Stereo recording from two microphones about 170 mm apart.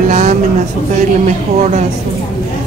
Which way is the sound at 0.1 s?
40° right (ahead or behind).